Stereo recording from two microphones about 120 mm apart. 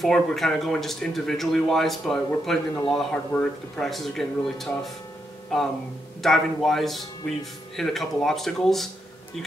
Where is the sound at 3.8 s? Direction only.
Centre (ahead or behind).